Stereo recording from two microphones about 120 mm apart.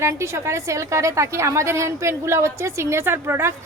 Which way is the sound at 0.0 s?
25° right (ahead or behind).